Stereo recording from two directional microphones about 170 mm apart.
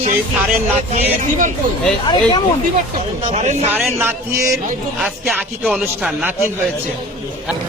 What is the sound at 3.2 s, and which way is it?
Speech, 45° right (ahead or behind).